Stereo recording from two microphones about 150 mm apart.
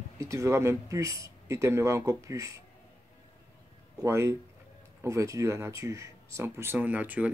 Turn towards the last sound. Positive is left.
turn(degrees=-10)  # may be behind; listen again after turning